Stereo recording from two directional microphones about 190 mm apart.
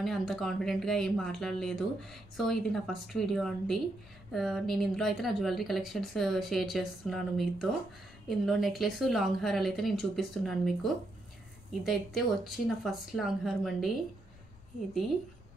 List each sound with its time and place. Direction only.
0.0 s speech: centre (ahead or behind)